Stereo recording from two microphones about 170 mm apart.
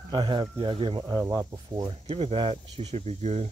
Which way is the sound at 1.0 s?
20° right (ahead or behind).